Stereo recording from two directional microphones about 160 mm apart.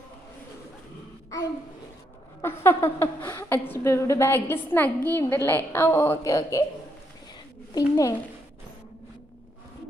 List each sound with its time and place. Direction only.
2.4 s a woman's voice: 15° left (ahead or behind)
7.7 s speech: 25° left (ahead or behind)